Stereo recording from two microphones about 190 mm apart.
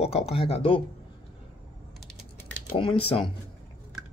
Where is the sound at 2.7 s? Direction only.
30° left (ahead or behind).